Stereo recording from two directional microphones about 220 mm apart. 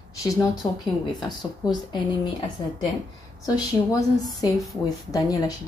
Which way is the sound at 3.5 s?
15° left (ahead or behind).